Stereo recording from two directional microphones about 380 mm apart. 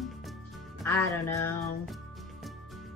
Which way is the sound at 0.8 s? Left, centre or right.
Centre.